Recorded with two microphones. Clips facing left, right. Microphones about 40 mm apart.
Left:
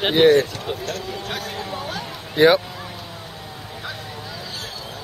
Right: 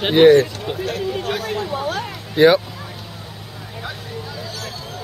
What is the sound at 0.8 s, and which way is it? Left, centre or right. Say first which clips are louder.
Speech: right 5 dB; right.